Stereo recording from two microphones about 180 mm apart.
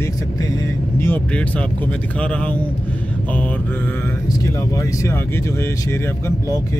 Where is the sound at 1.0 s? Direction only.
10° left (ahead or behind).